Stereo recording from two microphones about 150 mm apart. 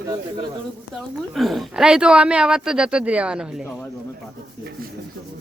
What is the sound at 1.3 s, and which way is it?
Speech, centre (ahead or behind).